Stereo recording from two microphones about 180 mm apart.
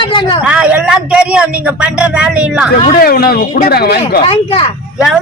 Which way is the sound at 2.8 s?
55° left (ahead or behind).